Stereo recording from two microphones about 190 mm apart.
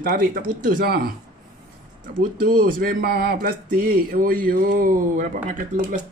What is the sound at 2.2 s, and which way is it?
Speech, 45° right (ahead or behind).